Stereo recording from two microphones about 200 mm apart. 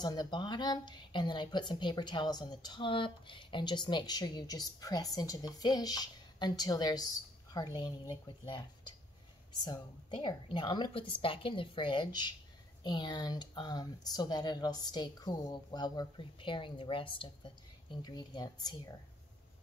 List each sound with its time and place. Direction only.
0.0 s speech: 20° left (ahead or behind)